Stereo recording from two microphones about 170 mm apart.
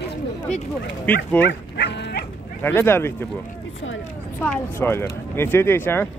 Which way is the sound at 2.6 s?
15° left (ahead or behind).